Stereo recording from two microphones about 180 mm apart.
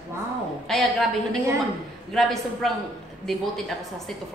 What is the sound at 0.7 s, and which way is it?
Speech, centre (ahead or behind).